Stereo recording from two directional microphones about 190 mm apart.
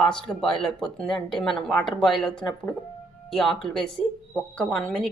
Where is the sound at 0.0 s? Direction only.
Centre (ahead or behind).